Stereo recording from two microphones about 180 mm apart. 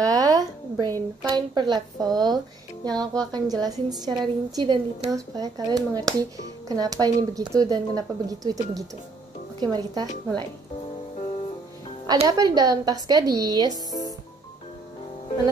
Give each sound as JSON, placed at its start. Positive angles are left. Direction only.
{"t": 0.0, "sound": "speech", "side_deg": -20}
{"t": 12.3, "sound": "speech", "side_deg": -20}
{"t": 13.7, "sound": "speech", "side_deg": 20}